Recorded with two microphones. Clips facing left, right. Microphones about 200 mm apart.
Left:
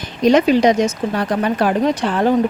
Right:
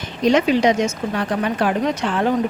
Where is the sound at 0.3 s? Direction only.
40° left (ahead or behind).